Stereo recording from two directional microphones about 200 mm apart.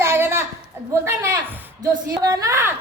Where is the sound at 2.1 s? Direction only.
15° right (ahead or behind).